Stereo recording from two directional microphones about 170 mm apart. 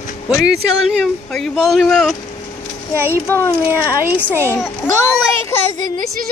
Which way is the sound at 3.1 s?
15° left (ahead or behind).